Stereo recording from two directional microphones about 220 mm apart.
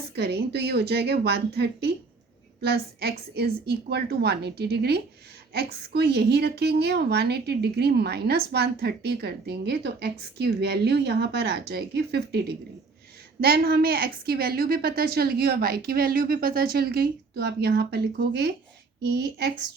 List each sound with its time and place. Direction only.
0.2 s speech: 45° right (ahead or behind)